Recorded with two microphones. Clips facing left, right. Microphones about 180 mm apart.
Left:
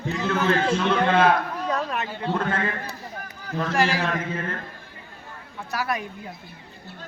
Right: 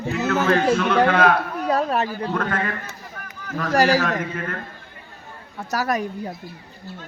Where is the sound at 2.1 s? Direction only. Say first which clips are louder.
Right 1 dB; 25° left (ahead or behind).